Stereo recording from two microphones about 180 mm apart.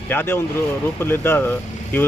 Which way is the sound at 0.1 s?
10° left (ahead or behind).